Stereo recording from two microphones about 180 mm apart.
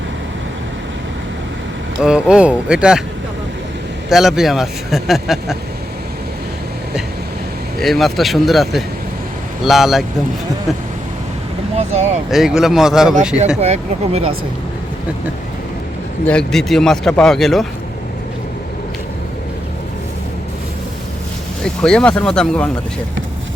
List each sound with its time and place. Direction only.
2.0 s a man's voice: 5° right (ahead or behind)
4.1 s a man's voice: centre (ahead or behind)
7.8 s a man's voice: centre (ahead or behind)
11.8 s speech: 40° right (ahead or behind)
12.3 s a man's voice: centre (ahead or behind)
13.6 s speech: 35° right (ahead or behind)
16.2 s a man's voice: 5° left (ahead or behind)
21.6 s a man's voice: 5° left (ahead or behind)